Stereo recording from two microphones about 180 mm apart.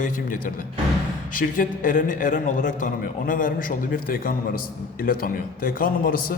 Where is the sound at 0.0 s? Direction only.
50° left (ahead or behind).